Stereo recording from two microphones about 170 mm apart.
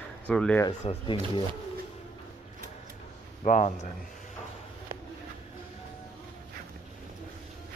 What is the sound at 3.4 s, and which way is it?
Speech, 45° left (ahead or behind).